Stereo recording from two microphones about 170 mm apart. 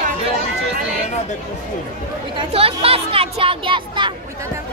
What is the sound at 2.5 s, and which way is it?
Speech, 35° right (ahead or behind).